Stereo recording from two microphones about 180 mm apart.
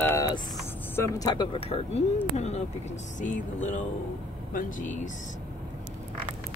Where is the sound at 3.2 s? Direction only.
45° left (ahead or behind).